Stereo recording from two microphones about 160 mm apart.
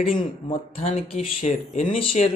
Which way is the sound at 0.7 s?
40° left (ahead or behind).